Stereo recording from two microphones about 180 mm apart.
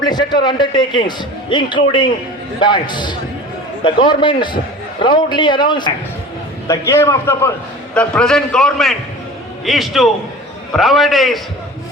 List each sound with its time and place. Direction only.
0.0 s a man's voice: 25° left (ahead or behind)
6.7 s a man's voice: 15° left (ahead or behind)